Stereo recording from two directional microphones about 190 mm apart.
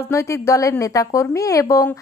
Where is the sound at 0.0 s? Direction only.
15° left (ahead or behind).